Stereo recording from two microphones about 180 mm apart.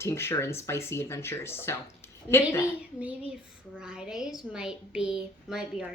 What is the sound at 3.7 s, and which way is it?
A woman's voice, 5° right (ahead or behind).